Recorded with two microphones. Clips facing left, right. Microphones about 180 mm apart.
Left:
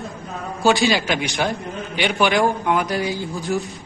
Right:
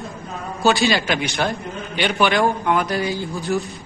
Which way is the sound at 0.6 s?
15° left (ahead or behind).